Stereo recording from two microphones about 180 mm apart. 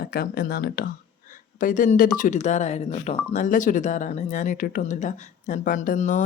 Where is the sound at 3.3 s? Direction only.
45° left (ahead or behind).